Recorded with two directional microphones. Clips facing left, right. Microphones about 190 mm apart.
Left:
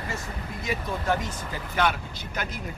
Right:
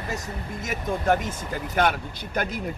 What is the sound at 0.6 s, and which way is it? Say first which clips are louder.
Speech: right 3 dB; 50° right (ahead or behind).